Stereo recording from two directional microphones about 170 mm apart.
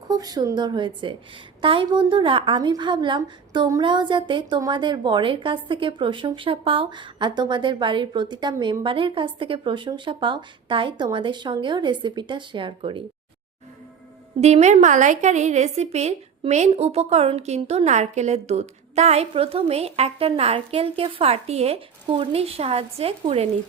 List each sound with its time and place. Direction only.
0.1 s a woman's voice: 20° right (ahead or behind)
14.4 s a woman's voice: 40° right (ahead or behind)